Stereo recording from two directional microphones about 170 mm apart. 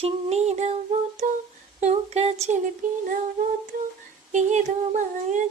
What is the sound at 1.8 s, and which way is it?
Humming, 40° right (ahead or behind).